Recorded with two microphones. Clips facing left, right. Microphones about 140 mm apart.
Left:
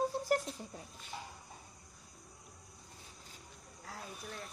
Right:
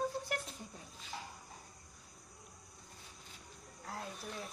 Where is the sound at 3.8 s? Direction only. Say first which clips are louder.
Right 3 dB; centre (ahead or behind).